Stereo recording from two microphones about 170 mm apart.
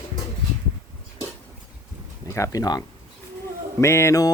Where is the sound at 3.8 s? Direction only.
15° left (ahead or behind).